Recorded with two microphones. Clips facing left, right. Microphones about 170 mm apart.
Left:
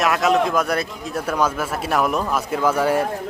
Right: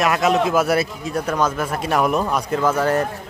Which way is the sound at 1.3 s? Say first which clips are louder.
Even; 10° left (ahead or behind).